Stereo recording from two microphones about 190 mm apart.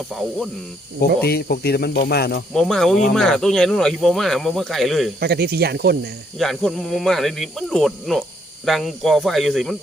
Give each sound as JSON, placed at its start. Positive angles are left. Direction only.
{"t": 0.1, "sound": "speech", "side_deg": 0}
{"t": 1.0, "sound": "speech", "side_deg": 55}
{"t": 2.5, "sound": "speech", "side_deg": 0}
{"t": 5.2, "sound": "speech", "side_deg": -55}
{"t": 6.4, "sound": "speech", "side_deg": 5}